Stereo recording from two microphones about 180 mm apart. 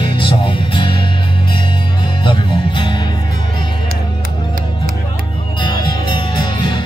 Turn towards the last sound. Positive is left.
turn(degrees=25)  # may be behind; listen again after turning